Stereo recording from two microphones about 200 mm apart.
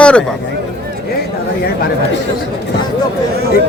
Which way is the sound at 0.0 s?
5° left (ahead or behind).